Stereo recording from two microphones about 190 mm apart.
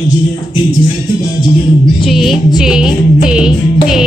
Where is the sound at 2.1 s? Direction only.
Centre (ahead or behind).